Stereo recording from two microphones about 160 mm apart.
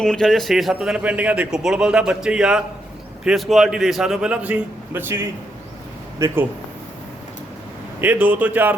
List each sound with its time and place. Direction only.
0.0 s a man's voice: 5° left (ahead or behind); by 6.4 s 20° right (ahead or behind)
8.0 s speech: 10° right (ahead or behind)